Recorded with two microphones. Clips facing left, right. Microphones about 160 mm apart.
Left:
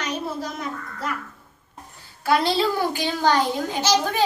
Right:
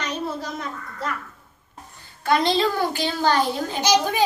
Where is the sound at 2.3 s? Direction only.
5° left (ahead or behind).